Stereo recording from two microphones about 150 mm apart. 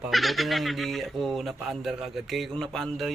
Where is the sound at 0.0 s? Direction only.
Centre (ahead or behind).